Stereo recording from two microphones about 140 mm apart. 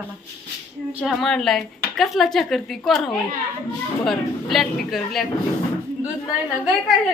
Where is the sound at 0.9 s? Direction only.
Centre (ahead or behind).